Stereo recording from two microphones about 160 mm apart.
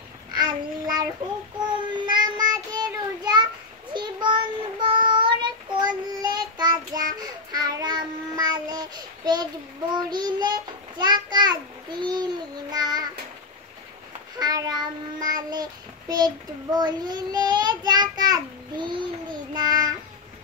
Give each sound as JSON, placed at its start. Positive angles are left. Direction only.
{"t": 0.3, "sound": "child singing", "side_deg": -25}
{"t": 14.4, "sound": "child singing", "side_deg": -25}